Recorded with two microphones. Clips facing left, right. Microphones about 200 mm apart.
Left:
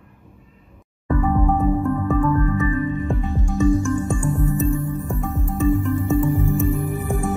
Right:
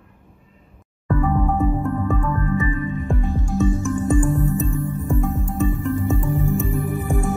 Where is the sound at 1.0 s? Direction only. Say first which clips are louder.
Left 1 dB; centre (ahead or behind).